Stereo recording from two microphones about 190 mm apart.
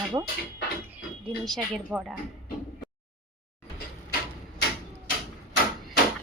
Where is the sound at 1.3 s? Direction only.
Centre (ahead or behind).